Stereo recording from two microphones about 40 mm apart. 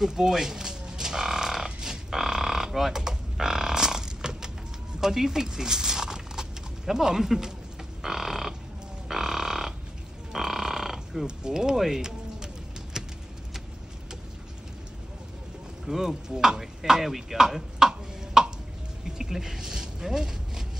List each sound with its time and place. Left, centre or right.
0.1 s frog: centre
5.0 s speech: centre
8.0 s crow: centre
9.1 s frog: centre
10.3 s burping: centre
11.2 s speech: centre
12.9 s a sound: centre
15.9 s speech: centre
19.0 s a sound: centre